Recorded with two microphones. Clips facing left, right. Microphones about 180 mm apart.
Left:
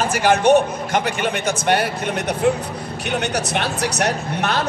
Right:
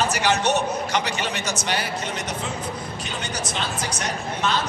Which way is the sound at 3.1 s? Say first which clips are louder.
Left 11 dB; 65° left (ahead or behind).